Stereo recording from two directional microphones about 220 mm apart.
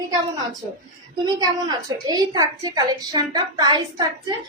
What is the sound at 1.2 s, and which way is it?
A woman's voice, 15° right (ahead or behind).